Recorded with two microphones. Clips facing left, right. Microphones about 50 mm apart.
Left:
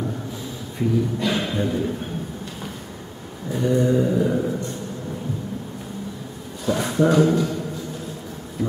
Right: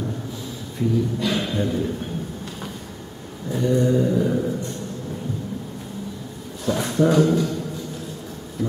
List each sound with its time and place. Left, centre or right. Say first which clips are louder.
0.7 s speech: even; centre
3.5 s speech: even; centre
6.6 s speech: even; centre
8.6 s bee: even; centre